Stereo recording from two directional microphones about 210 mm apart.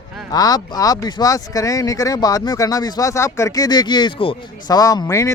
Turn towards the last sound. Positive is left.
turn(degrees=15)  # may be behind; listen again after turning